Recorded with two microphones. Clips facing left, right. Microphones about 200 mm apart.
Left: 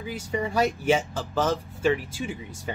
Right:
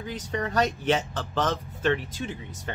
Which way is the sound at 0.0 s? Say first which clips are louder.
Left 2 dB; 10° left (ahead or behind).